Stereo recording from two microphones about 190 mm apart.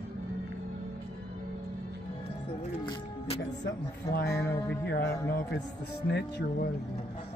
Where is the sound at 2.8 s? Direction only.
25° left (ahead or behind).